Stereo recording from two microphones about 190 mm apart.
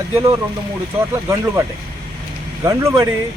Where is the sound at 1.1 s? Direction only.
15° right (ahead or behind).